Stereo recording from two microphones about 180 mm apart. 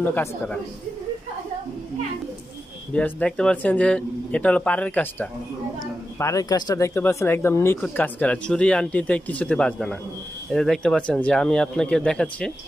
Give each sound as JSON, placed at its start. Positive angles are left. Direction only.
{"t": 0.0, "sound": "speech", "side_deg": 10}
{"t": 2.9, "sound": "speech", "side_deg": 5}